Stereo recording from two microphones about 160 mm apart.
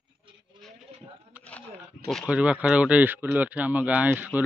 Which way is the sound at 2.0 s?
5° left (ahead or behind).